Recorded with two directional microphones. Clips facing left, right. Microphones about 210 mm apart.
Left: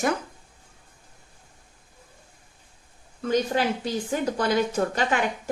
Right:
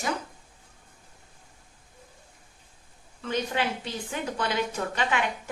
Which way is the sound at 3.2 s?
40° left (ahead or behind).